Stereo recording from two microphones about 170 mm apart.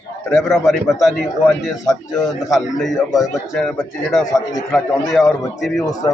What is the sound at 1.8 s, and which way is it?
Speech, 20° left (ahead or behind).